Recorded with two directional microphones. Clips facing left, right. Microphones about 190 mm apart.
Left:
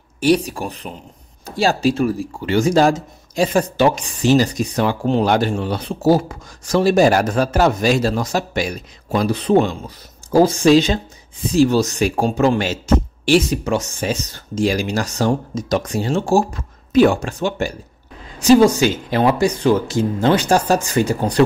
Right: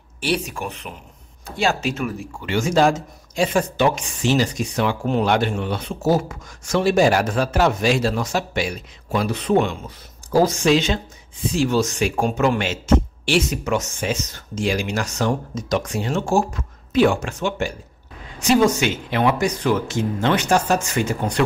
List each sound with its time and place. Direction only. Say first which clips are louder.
0.2 s speech: left 7 dB; 40° left (ahead or behind)